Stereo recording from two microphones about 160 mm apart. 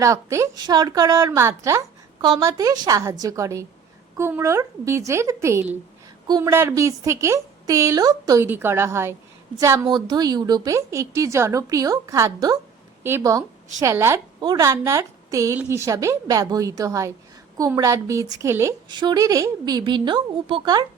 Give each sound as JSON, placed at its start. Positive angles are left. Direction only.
{"t": 0.0, "sound": "a woman's voice", "side_deg": -20}
{"t": 18.9, "sound": "a woman's voice", "side_deg": -30}